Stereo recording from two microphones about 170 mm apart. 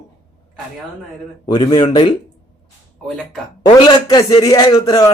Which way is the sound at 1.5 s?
30° left (ahead or behind).